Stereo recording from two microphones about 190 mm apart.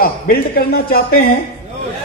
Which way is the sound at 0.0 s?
50° left (ahead or behind).